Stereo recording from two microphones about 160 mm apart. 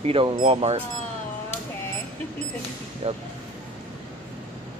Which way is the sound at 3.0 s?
40° right (ahead or behind).